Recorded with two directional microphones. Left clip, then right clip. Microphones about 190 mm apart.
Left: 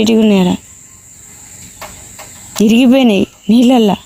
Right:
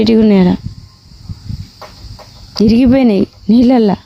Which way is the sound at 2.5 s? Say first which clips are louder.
Even; 40° right (ahead or behind).